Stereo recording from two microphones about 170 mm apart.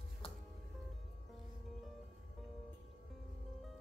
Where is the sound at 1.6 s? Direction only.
Centre (ahead or behind).